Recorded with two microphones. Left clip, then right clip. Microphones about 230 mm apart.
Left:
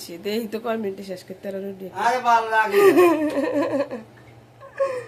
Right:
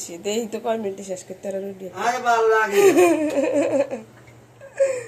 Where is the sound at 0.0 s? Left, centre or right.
Centre.